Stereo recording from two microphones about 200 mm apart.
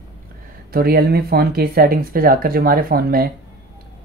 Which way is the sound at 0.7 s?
50° right (ahead or behind).